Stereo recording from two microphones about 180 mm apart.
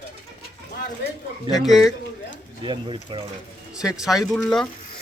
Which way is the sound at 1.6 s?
Centre (ahead or behind).